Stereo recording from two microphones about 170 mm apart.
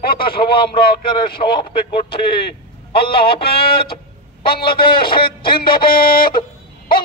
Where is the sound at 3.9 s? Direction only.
65° left (ahead or behind).